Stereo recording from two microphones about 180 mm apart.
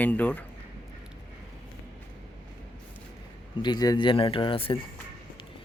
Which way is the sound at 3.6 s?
20° left (ahead or behind).